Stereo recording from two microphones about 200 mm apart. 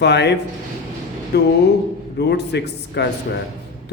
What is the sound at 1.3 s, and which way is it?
Speech, 55° left (ahead or behind).